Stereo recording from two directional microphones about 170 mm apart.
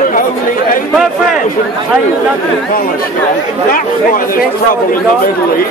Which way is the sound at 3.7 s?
55° left (ahead or behind).